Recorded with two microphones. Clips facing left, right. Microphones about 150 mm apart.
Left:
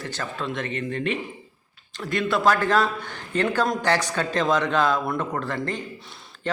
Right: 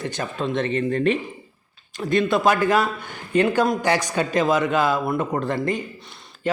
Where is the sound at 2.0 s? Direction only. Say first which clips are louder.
Right 4 dB; 20° right (ahead or behind).